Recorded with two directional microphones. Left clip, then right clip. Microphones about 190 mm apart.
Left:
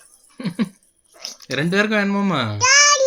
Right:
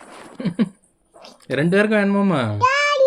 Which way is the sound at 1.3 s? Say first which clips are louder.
Right 2 dB; 35° left (ahead or behind).